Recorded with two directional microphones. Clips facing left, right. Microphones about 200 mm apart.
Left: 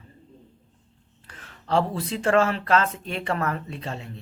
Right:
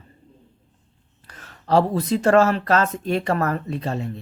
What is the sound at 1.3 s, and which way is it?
Speech, 40° right (ahead or behind).